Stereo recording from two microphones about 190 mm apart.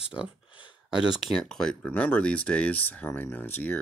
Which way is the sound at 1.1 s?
Centre (ahead or behind).